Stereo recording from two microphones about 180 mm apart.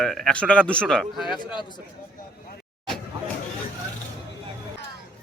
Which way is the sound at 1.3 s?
25° left (ahead or behind).